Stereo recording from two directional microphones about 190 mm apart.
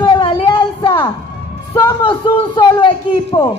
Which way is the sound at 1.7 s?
20° left (ahead or behind).